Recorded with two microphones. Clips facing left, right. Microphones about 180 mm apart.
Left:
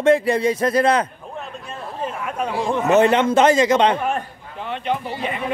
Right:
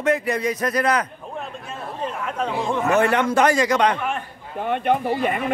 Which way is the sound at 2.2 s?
15° left (ahead or behind).